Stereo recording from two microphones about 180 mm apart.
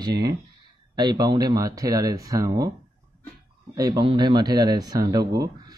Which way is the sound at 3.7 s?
20° right (ahead or behind).